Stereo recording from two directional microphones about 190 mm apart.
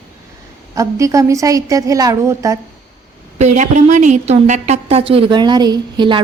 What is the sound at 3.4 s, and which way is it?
A woman's voice, 40° right (ahead or behind).